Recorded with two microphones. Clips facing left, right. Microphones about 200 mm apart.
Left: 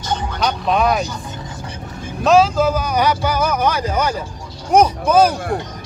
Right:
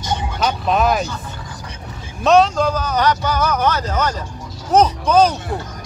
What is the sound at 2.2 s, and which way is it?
A man's voice, centre (ahead or behind).